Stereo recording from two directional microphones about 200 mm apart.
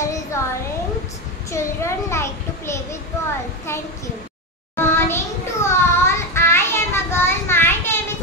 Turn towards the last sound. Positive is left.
turn(degrees=10)  # may be behind; listen again after turning